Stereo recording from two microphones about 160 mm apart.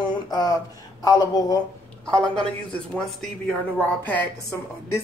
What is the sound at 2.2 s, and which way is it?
A man's voice, 5° left (ahead or behind).